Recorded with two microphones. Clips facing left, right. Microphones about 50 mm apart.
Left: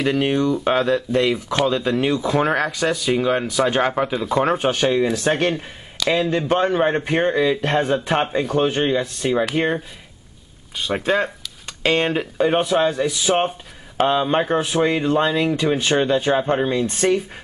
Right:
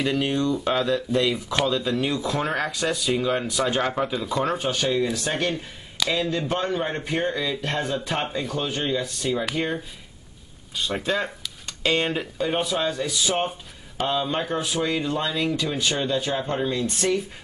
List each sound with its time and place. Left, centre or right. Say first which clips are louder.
0.0 s speech: left 4 dB; left
4.3 s speech: left 6 dB; left
6.0 s a sound: left 5 dB; centre
6.3 s speech: left 7 dB; left
10.8 s speech: left 5 dB; left
16.7 s speech: left 5 dB; left